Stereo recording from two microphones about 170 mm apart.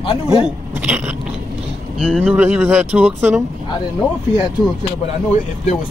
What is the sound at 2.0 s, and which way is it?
Speech, 5° right (ahead or behind).